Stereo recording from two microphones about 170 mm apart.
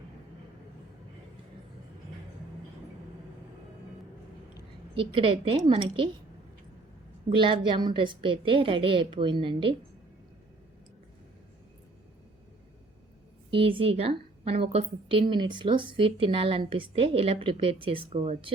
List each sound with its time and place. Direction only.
4.9 s a woman's voice: 30° right (ahead or behind)
7.3 s a woman's voice: 30° right (ahead or behind)
13.5 s a woman's voice: 30° right (ahead or behind)